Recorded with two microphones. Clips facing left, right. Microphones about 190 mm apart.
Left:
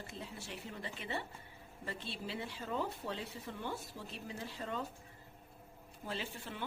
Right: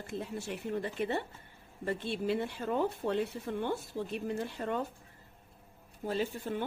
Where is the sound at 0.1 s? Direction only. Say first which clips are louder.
Right 9 dB; 60° right (ahead or behind).